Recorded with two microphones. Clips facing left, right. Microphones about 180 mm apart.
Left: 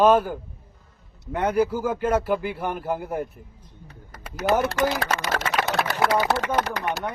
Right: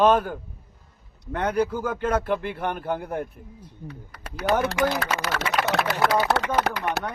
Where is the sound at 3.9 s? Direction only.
45° left (ahead or behind).